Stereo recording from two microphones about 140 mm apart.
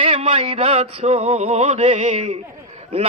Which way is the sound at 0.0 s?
45° right (ahead or behind).